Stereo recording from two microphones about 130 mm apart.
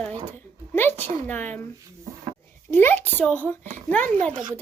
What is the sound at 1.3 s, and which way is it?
Speech, 15° left (ahead or behind).